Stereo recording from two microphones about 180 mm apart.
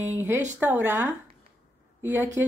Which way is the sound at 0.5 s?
10° right (ahead or behind).